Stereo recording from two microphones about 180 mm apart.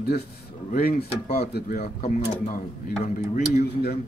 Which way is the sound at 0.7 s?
55° left (ahead or behind).